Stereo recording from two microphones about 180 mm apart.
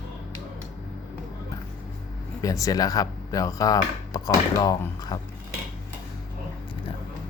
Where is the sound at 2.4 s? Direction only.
20° left (ahead or behind).